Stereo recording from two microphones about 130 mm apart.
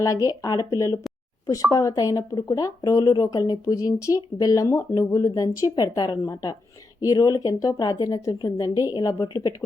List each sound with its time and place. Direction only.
0.0 s speech: 25° left (ahead or behind)
1.7 s speech: 30° left (ahead or behind)